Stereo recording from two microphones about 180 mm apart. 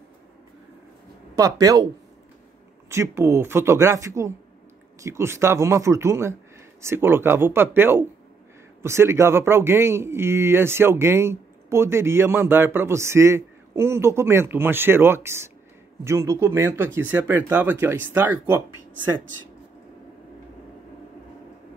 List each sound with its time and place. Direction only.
1.3 s speech: 20° right (ahead or behind)
2.9 s speech: 15° right (ahead or behind)